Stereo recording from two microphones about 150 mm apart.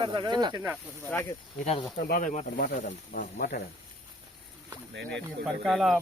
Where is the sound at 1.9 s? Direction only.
75° left (ahead or behind); by 2.6 s 55° left (ahead or behind).